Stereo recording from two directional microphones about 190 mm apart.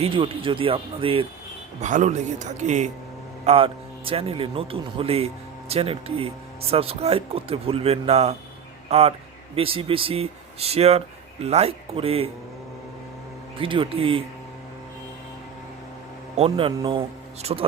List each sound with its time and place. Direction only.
0.0 s speech: 25° right (ahead or behind)
1.8 s speech: 40° right (ahead or behind)
13.6 s speech: 25° right (ahead or behind)
16.4 s speech: 25° right (ahead or behind)